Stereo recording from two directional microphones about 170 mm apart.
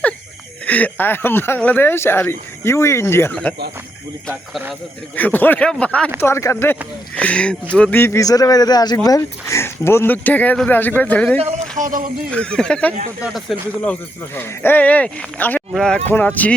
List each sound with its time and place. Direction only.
0.6 s speech: 10° left (ahead or behind)
5.1 s speech: 10° left (ahead or behind)
11.8 s speech: 55° right (ahead or behind)
12.3 s speech: 5° left (ahead or behind)